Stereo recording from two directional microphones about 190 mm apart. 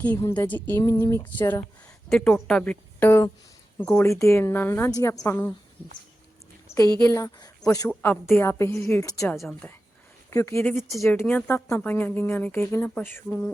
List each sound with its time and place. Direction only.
0.0 s speech: 10° left (ahead or behind)
7.0 s speech: 15° left (ahead or behind)
9.3 s speech: centre (ahead or behind)
10.2 s speech: 15° left (ahead or behind)